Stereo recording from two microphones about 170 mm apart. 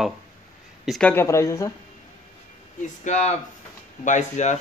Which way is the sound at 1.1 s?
15° left (ahead or behind).